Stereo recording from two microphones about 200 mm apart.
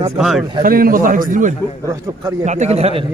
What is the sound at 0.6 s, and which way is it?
A man's voice, 45° right (ahead or behind).